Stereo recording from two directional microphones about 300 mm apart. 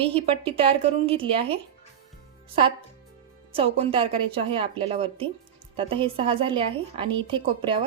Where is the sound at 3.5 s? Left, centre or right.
Centre.